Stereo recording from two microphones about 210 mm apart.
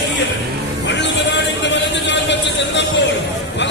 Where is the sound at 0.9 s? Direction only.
55° left (ahead or behind).